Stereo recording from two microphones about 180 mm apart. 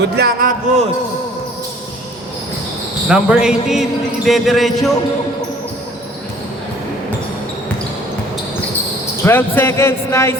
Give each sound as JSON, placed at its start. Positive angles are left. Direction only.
{"t": 0.0, "sound": "a man's voice", "side_deg": -60}
{"t": 3.1, "sound": "speech", "side_deg": -5}
{"t": 9.2, "sound": "speech", "side_deg": 10}